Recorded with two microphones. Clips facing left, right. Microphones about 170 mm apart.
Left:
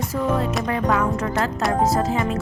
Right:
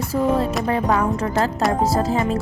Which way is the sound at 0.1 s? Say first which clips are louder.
Right 4 dB; 30° right (ahead or behind).